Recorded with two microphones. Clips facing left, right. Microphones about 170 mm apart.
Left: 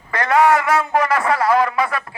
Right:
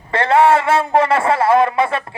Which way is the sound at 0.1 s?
30° right (ahead or behind).